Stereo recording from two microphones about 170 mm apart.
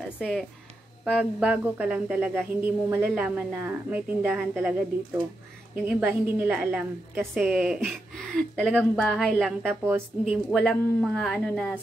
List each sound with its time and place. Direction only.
0.0 s speech: centre (ahead or behind)
5.9 s a woman's voice: 5° right (ahead or behind)
9.7 s speech: 10° right (ahead or behind)
10.5 s a woman's voice: 5° left (ahead or behind)